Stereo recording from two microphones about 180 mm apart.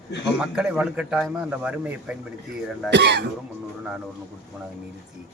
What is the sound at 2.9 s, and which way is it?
Speech, 70° right (ahead or behind).